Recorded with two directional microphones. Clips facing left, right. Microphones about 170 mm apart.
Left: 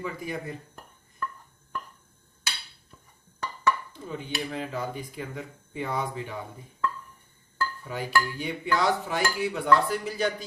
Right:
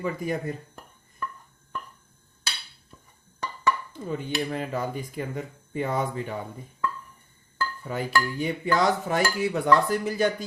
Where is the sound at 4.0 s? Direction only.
55° right (ahead or behind).